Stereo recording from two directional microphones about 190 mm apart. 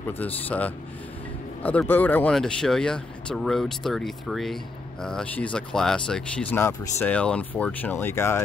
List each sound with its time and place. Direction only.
0.2 s speech: 10° left (ahead or behind)